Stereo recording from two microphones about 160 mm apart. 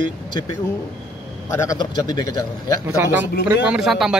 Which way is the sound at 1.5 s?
20° left (ahead or behind).